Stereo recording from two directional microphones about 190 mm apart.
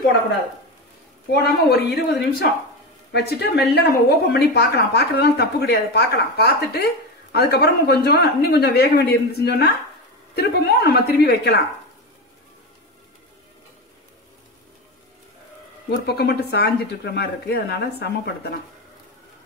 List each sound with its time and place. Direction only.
1.3 s speech: 55° left (ahead or behind)
15.9 s speech: 55° left (ahead or behind)